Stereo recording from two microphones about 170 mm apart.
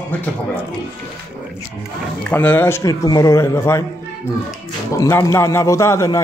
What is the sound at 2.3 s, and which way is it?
Speech, 10° left (ahead or behind).